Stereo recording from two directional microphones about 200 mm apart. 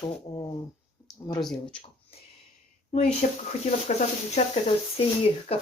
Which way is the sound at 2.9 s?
35° left (ahead or behind).